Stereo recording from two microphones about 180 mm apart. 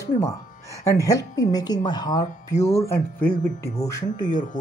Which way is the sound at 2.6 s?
35° left (ahead or behind).